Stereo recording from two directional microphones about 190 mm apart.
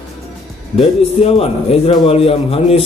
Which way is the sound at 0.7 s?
30° left (ahead or behind).